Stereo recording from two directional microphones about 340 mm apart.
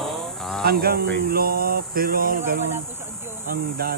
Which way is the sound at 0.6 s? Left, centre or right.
Right.